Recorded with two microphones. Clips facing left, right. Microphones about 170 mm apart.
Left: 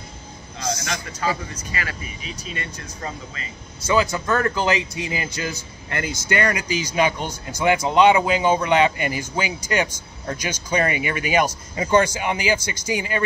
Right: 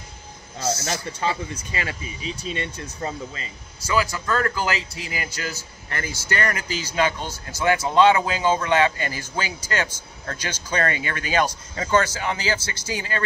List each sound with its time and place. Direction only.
0.8 s speech: 25° right (ahead or behind)
3.8 s a man's voice: 20° left (ahead or behind)